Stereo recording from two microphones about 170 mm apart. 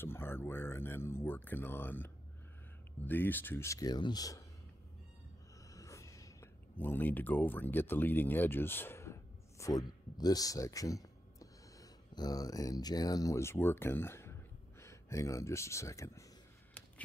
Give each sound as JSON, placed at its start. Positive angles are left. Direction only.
{"t": 0.0, "sound": "speech", "side_deg": 15}
{"t": 5.7, "sound": "speech", "side_deg": 20}